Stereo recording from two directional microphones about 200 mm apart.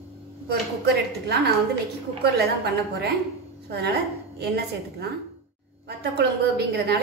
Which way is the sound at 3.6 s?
55° right (ahead or behind).